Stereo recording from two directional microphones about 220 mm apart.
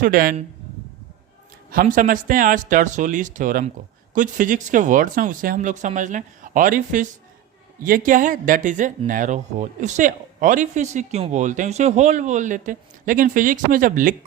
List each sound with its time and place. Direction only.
0.0 s speech: 40° right (ahead or behind)
1.7 s speech: 40° right (ahead or behind)